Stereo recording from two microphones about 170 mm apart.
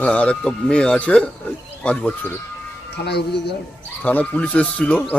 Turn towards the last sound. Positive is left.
turn(degrees=5)  # may be behind; listen again after turning